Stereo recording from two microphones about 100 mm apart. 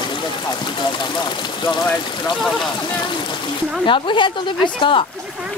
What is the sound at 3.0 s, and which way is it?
Speech, 50° left (ahead or behind).